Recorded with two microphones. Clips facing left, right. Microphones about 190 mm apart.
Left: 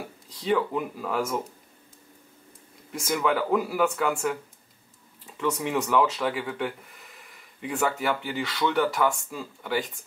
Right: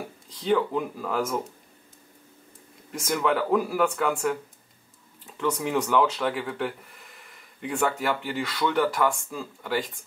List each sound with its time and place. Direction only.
0.0 s speech: 5° left (ahead or behind)
2.9 s speech: 5° left (ahead or behind)